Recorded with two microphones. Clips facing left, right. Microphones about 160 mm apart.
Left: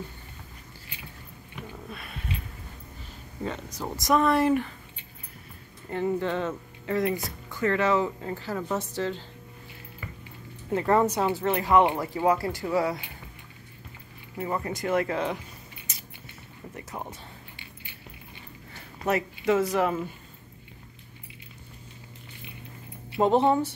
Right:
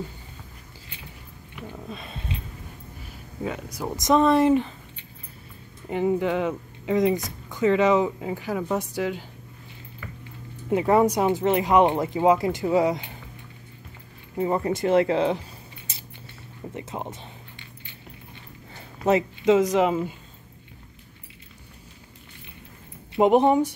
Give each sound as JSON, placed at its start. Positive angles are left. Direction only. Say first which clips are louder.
{"t": 1.9, "sound": "a sound", "louder": "right 3 dB", "side_deg": -25}
{"t": 3.4, "sound": "speech", "louder": "right 3 dB", "side_deg": -10}
{"t": 5.9, "sound": "speech", "louder": "right 4 dB", "side_deg": -15}
{"t": 10.7, "sound": "speech", "louder": "right 4 dB", "side_deg": -15}
{"t": 14.3, "sound": "speech", "louder": "right 7 dB", "side_deg": -25}
{"t": 15.9, "sound": "a sound", "louder": "right 2 dB", "side_deg": -30}
{"t": 16.7, "sound": "speech", "louder": "right 4 dB", "side_deg": -20}
{"t": 19.0, "sound": "speech", "louder": "right 5 dB", "side_deg": -20}
{"t": 23.1, "sound": "speech", "louder": "right 4 dB", "side_deg": -15}